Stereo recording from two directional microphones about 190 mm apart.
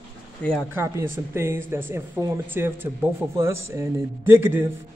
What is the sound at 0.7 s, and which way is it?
A man's voice, 10° right (ahead or behind).